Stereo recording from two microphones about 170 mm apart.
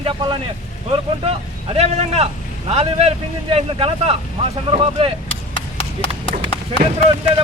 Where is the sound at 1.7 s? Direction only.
40° right (ahead or behind).